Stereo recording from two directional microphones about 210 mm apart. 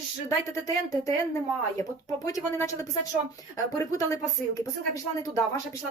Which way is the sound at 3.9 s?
15° left (ahead or behind).